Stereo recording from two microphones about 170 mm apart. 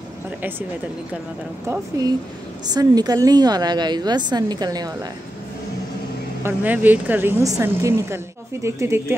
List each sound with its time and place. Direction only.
1.7 s a woman's voice: 20° right (ahead or behind)
6.4 s a woman's voice: 10° right (ahead or behind)